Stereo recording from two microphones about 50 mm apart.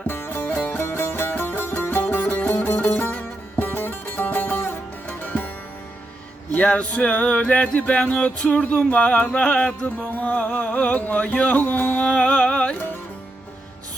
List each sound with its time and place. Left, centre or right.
0.1 s music: left
3.1 s music: left
3.8 s music: left
5.0 s music: left
6.7 s music: left
12.0 s music: centre